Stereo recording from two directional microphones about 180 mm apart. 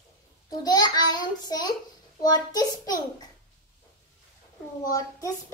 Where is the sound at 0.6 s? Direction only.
20° left (ahead or behind).